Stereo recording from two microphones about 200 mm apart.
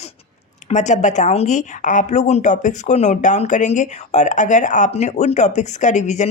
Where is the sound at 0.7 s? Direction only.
35° left (ahead or behind).